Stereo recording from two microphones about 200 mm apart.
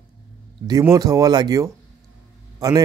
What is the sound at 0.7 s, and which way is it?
Speech, 20° right (ahead or behind).